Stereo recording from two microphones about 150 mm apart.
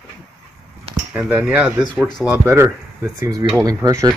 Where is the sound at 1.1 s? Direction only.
5° right (ahead or behind).